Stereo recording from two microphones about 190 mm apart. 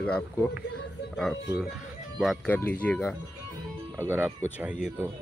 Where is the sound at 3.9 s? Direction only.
10° right (ahead or behind).